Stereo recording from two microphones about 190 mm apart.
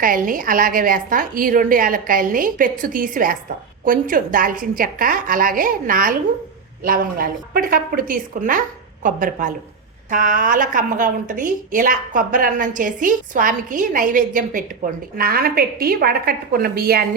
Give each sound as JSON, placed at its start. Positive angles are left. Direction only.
{"t": 0.0, "sound": "a woman's voice", "side_deg": -45}